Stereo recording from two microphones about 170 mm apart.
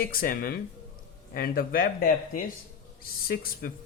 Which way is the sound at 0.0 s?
60° left (ahead or behind).